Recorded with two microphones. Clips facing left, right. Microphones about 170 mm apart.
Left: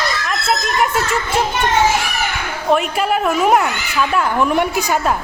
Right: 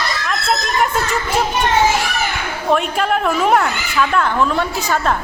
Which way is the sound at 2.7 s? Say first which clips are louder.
Left 1 dB; 5° left (ahead or behind).